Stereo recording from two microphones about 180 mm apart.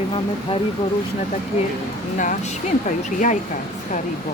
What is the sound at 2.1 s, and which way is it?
A woman's voice, 45° left (ahead or behind).